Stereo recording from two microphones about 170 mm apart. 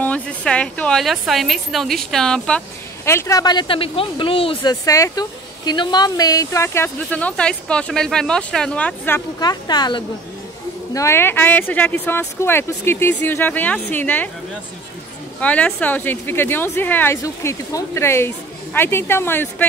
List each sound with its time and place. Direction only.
0.0 s a woman's voice: 10° left (ahead or behind)
3.1 s speech: 15° left (ahead or behind); by 4.7 s 30° left (ahead or behind)
4.8 s a woman's voice: 20° left (ahead or behind)
9.4 s a woman's voice: 25° left (ahead or behind)
15.4 s a woman's voice: 10° left (ahead or behind)